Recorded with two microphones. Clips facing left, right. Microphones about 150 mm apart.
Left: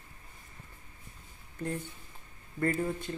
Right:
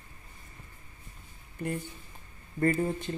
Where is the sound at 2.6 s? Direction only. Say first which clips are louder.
Right 3 dB; 20° right (ahead or behind).